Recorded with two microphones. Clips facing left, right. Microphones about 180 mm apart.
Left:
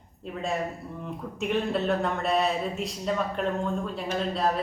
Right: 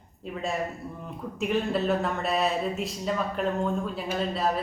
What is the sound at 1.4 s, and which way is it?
Speech, centre (ahead or behind).